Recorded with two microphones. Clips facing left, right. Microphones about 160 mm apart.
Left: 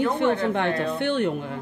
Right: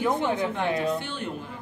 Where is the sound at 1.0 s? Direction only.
65° left (ahead or behind).